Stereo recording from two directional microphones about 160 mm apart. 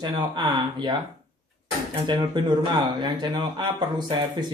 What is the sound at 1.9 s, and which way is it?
Speech, 30° right (ahead or behind).